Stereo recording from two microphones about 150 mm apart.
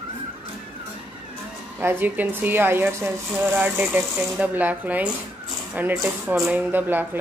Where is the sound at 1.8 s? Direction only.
15° right (ahead or behind).